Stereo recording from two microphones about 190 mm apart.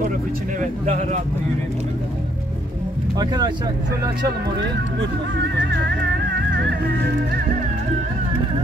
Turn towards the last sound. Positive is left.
turn(degrees=-55)  # may be behind; listen again after turning